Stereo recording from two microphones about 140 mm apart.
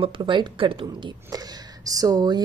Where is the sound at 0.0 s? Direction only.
35° right (ahead or behind).